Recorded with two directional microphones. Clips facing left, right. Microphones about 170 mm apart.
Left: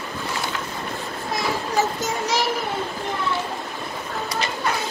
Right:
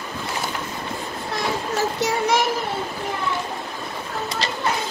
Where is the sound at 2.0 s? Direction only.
60° right (ahead or behind).